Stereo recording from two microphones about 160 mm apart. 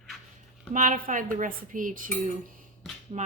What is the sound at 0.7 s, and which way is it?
Speech, 55° right (ahead or behind).